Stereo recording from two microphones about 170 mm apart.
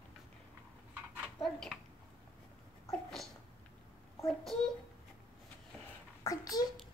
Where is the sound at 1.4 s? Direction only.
Centre (ahead or behind).